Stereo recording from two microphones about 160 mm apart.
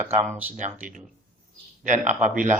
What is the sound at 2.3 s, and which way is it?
Speech, 55° right (ahead or behind).